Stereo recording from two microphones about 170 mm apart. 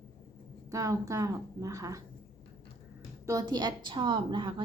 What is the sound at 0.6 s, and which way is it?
A woman's voice, 20° right (ahead or behind).